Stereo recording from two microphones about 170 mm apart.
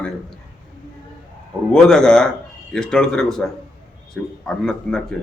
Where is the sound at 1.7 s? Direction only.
5° left (ahead or behind).